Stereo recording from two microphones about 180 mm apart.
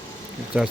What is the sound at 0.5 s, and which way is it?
Speech, 5° right (ahead or behind).